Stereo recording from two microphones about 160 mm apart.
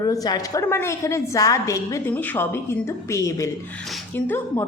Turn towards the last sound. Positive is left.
turn(degrees=10)  # may be behind; listen again after turning